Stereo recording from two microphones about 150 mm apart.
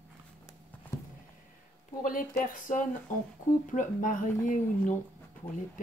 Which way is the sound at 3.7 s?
60° left (ahead or behind).